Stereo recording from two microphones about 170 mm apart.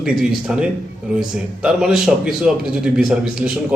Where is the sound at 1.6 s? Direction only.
Centre (ahead or behind).